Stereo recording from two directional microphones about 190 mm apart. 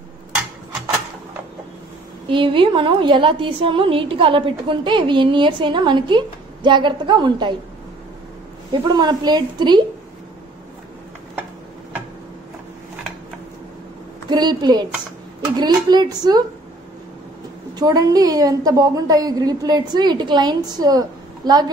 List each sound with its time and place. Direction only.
2.2 s a woman's voice: 25° right (ahead or behind)
8.9 s a woman's voice: 20° right (ahead or behind)
14.3 s a woman's voice: 20° right (ahead or behind)
17.7 s a woman's voice: 20° right (ahead or behind)